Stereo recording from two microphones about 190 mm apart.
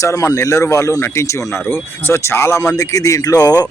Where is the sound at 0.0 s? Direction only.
15° left (ahead or behind).